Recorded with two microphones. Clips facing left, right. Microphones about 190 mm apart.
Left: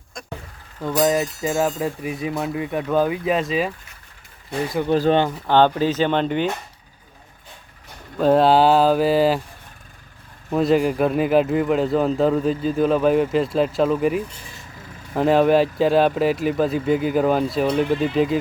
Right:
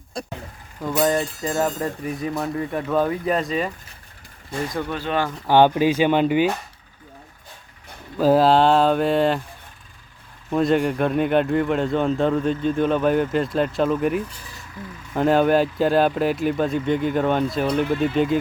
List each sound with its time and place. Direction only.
0.1 s speech: 35° right (ahead or behind)
0.8 s a man's voice: centre (ahead or behind)
4.9 s speech: 35° left (ahead or behind)
5.5 s speech: 10° right (ahead or behind)
8.2 s a man's voice: centre (ahead or behind)
10.5 s a man's voice: centre (ahead or behind)